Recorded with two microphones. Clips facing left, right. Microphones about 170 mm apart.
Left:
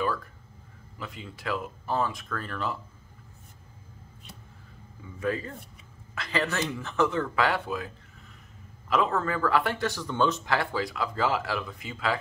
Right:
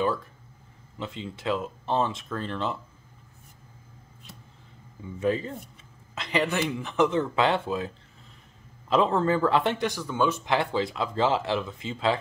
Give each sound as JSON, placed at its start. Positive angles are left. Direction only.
{"t": 0.9, "sound": "speech", "side_deg": -25}
{"t": 5.2, "sound": "a man's voice", "side_deg": -25}